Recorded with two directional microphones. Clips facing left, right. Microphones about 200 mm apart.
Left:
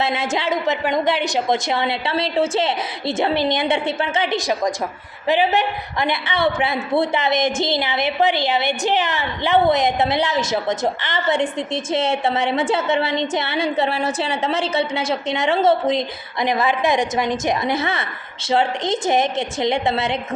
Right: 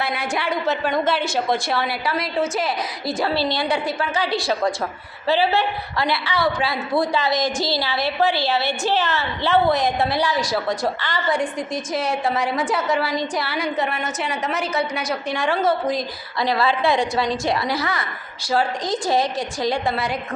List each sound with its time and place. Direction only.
0.0 s a woman's voice: 25° left (ahead or behind)